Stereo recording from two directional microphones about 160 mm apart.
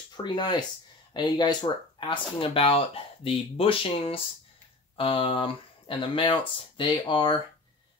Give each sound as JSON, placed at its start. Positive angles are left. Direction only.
{"t": 0.2, "sound": "speech", "side_deg": 25}